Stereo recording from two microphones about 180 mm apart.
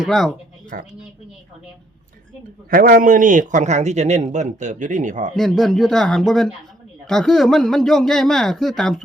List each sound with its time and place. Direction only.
0.0 s speech: centre (ahead or behind)
0.7 s a man's voice: 50° right (ahead or behind)
2.6 s a man's voice: 50° right (ahead or behind)
5.3 s speech: centre (ahead or behind)